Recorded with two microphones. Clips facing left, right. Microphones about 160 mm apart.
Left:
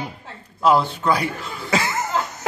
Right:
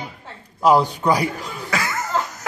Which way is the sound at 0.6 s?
15° right (ahead or behind).